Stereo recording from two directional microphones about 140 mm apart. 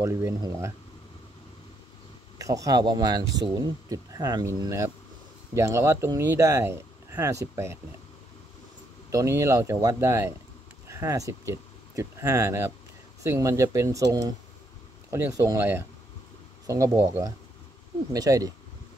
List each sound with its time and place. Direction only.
0.0 s speech: 20° right (ahead or behind)
2.3 s speech: 25° right (ahead or behind)
9.1 s speech: 20° right (ahead or behind)